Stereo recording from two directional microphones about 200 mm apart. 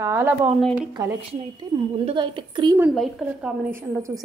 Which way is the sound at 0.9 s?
20° right (ahead or behind).